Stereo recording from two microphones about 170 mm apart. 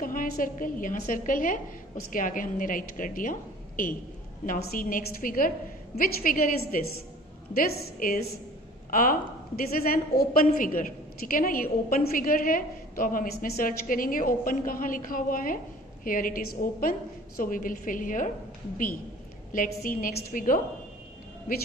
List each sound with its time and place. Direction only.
0.0 s a woman's voice: 55° left (ahead or behind)
9.6 s a woman's voice: 60° left (ahead or behind)
19.5 s a woman's voice: 55° left (ahead or behind)